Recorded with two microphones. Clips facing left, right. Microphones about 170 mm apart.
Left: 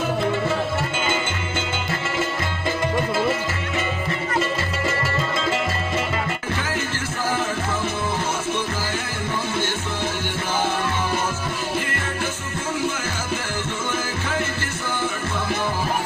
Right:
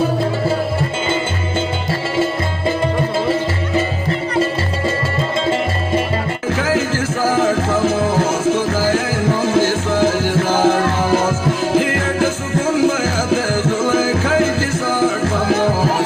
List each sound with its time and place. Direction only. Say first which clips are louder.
6.6 s music: right 9 dB; 90° right